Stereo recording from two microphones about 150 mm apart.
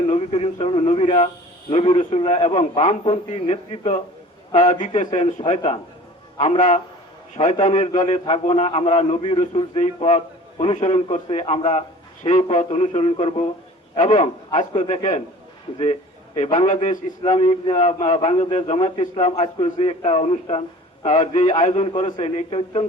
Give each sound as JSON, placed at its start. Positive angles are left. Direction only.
{"t": 0.1, "sound": "a man's voice", "side_deg": 40}
{"t": 4.8, "sound": "a man's voice", "side_deg": 40}
{"t": 8.3, "sound": "a man's voice", "side_deg": 40}
{"t": 17.3, "sound": "a man's voice", "side_deg": 40}